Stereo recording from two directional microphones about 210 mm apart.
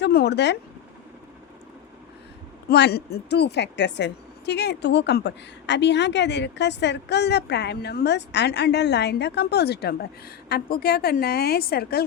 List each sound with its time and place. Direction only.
0.0 s speech: 50° left (ahead or behind)
2.6 s speech: 50° left (ahead or behind)